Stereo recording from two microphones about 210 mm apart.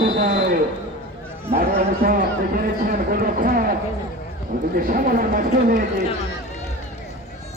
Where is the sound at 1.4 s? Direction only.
45° right (ahead or behind).